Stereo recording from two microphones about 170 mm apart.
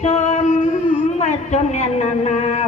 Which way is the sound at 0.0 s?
40° left (ahead or behind).